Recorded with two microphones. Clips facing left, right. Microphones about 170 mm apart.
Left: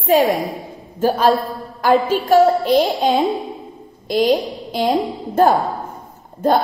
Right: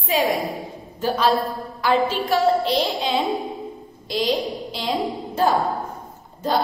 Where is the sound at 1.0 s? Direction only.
50° left (ahead or behind).